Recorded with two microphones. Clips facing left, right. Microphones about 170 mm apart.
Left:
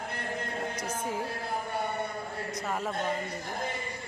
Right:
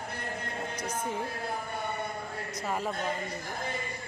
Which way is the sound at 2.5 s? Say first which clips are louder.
Right 1 dB; centre (ahead or behind).